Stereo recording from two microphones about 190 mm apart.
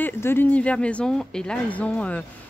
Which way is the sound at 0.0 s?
10° left (ahead or behind).